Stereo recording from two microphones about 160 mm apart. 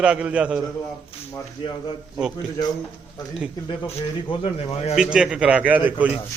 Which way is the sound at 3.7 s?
35° left (ahead or behind).